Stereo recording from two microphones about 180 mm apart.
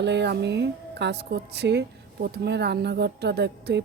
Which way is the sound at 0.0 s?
75° right (ahead or behind).